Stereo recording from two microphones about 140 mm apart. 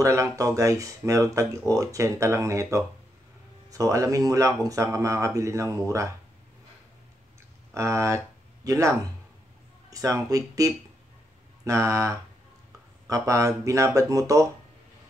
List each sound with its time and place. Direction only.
0.0 s speech: 20° right (ahead or behind)
7.7 s speech: 20° right (ahead or behind)